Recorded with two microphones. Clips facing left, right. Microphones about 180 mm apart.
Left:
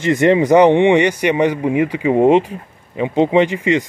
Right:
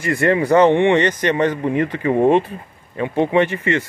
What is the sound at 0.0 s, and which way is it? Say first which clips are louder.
A man's voice: left 4 dB; 20° left (ahead or behind).